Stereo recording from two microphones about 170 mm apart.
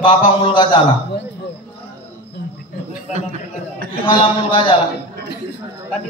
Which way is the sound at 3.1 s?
50° right (ahead or behind).